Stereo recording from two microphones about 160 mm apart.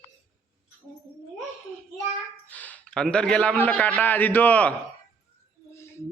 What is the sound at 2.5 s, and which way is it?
A man's voice, 10° left (ahead or behind).